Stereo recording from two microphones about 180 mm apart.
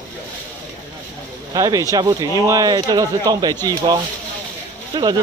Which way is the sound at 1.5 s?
20° right (ahead or behind).